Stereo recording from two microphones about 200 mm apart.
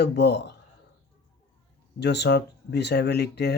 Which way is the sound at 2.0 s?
55° left (ahead or behind).